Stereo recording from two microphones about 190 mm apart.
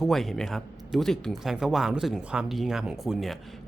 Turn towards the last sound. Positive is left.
turn(degrees=0)  # may be behind; listen again after turning